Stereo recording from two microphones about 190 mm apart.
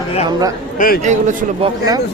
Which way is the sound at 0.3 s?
20° right (ahead or behind).